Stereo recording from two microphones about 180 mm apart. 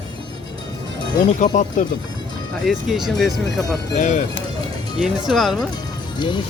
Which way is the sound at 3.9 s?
40° left (ahead or behind).